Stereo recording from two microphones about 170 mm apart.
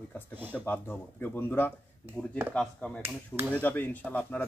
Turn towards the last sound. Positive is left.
turn(degrees=10)  # may be behind; listen again after turning